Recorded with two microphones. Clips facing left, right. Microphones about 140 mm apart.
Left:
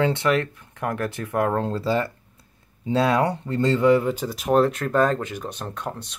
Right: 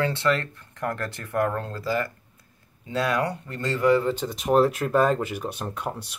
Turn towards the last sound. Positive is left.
turn(degrees=-10)  # may be behind; listen again after turning